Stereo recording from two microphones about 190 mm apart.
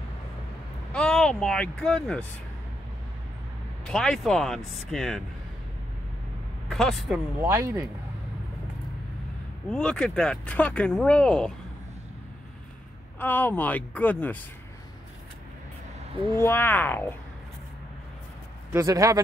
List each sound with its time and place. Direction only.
0.9 s speech: 5° left (ahead or behind)
3.8 s speech: 5° left (ahead or behind)
6.7 s speech: centre (ahead or behind)
7.4 s speech: 15° right (ahead or behind)
9.7 s speech: 5° left (ahead or behind)
13.2 s speech: 10° left (ahead or behind)
16.3 s speech: 10° left (ahead or behind)
18.7 s speech: 15° right (ahead or behind)